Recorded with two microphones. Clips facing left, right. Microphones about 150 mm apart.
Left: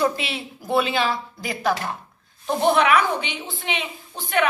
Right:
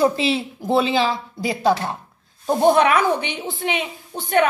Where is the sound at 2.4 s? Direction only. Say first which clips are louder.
Right 4 dB; 40° right (ahead or behind).